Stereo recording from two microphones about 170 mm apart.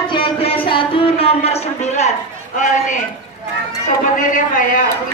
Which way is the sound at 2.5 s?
45° left (ahead or behind).